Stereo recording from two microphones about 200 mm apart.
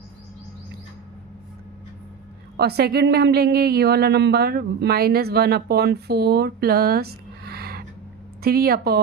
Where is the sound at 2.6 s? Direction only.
50° right (ahead or behind).